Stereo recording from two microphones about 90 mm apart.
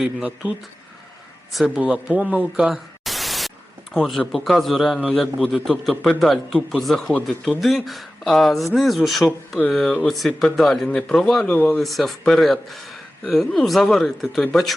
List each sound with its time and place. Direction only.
0.0 s speech: 15° right (ahead or behind)
1.5 s speech: 5° right (ahead or behind); by 11.8 s 20° left (ahead or behind)
11.8 s speech: centre (ahead or behind)